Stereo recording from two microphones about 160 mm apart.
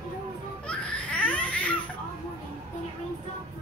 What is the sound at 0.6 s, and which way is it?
Laughter, 5° left (ahead or behind).